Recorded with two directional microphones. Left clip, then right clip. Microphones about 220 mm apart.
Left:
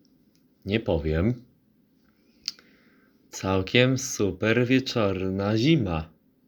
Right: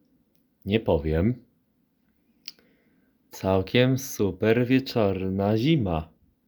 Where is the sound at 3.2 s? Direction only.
20° right (ahead or behind).